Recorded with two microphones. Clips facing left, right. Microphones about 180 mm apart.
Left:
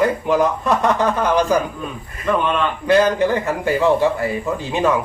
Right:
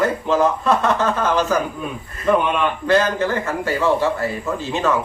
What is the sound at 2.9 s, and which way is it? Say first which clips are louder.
Speech: left 4 dB; 15° left (ahead or behind).